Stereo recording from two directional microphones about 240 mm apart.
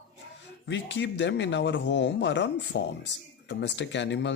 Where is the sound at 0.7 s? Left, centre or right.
Left.